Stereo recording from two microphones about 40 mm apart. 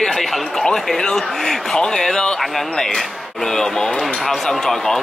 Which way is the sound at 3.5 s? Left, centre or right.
Centre.